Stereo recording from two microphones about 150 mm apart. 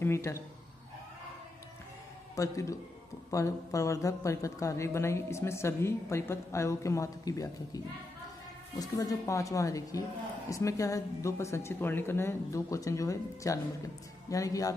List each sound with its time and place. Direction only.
0.0 s speech: 15° left (ahead or behind)
2.3 s a woman's voice: 20° left (ahead or behind)